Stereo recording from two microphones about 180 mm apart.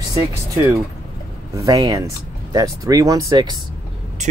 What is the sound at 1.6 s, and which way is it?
Speech, 20° right (ahead or behind).